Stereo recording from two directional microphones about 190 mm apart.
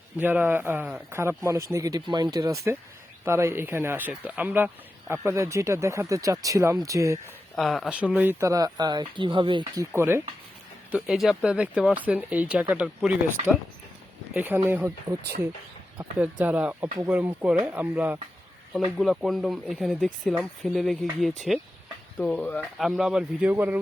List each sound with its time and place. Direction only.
0.2 s speech: 10° right (ahead or behind)
7.5 s speech: centre (ahead or behind)
10.9 s speech: centre (ahead or behind)
14.3 s speech: 10° right (ahead or behind)
16.0 s speech: 10° right (ahead or behind)